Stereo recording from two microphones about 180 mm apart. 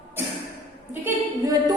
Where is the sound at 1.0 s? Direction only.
20° right (ahead or behind).